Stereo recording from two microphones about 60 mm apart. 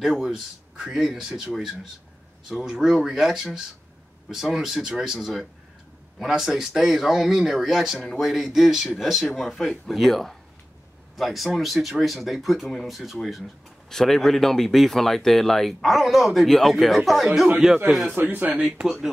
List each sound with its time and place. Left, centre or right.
0.0 s speech: centre
2.6 s speech: centre
18.0 s a man's voice: right